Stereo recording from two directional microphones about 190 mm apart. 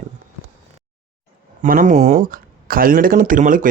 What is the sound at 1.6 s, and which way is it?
Speech, 45° right (ahead or behind).